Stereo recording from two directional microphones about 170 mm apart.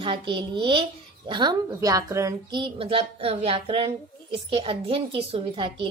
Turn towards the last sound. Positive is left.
turn(degrees=-30)  # may be behind; listen again after turning